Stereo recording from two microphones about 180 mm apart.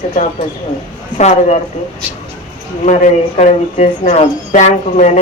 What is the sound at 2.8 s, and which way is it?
A man's voice, 40° left (ahead or behind).